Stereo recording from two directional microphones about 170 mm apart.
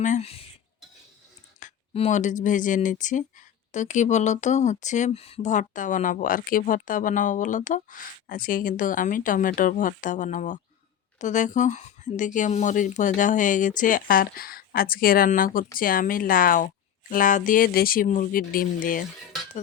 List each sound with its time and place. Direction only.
0.0 s speech: 40° left (ahead or behind)
1.9 s speech: 40° left (ahead or behind)